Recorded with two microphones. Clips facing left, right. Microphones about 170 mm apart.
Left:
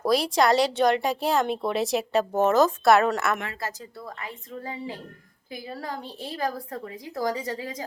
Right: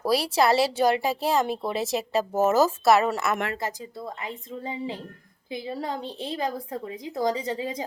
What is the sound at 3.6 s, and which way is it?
A woman's voice, 20° right (ahead or behind).